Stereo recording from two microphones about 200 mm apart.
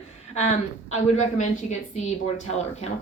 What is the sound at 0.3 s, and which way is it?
A woman's voice, 35° left (ahead or behind).